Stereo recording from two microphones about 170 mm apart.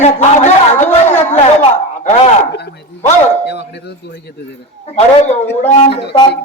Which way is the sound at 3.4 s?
85° left.